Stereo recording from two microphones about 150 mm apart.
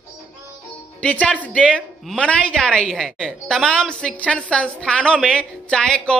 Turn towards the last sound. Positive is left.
turn(degrees=5)  # may be behind; listen again after turning